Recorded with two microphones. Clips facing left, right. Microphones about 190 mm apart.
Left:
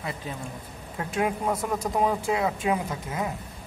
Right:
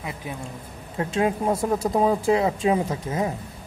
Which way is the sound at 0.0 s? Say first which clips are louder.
Right 1 dB; 15° right (ahead or behind).